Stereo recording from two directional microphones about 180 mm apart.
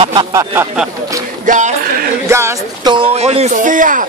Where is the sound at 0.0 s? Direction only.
30° right (ahead or behind).